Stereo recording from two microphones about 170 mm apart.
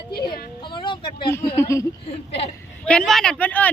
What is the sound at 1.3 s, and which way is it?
Speech, 15° left (ahead or behind).